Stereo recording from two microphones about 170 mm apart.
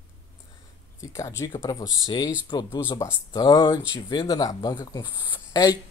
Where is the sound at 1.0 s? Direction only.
20° left (ahead or behind).